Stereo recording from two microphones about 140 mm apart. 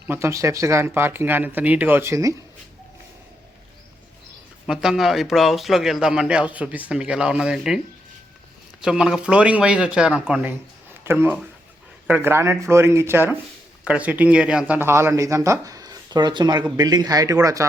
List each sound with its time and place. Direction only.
0.1 s speech: 20° right (ahead or behind)
4.6 s a man's voice: 5° right (ahead or behind)
8.8 s speech: 5° right (ahead or behind); by 17.7 s 25° right (ahead or behind)